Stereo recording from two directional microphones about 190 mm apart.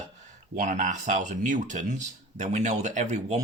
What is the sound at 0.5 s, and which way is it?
Speech, 45° right (ahead or behind).